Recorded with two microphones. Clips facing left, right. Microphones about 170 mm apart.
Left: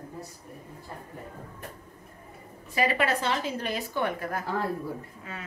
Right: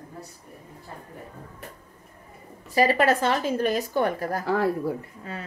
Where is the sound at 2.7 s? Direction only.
40° right (ahead or behind).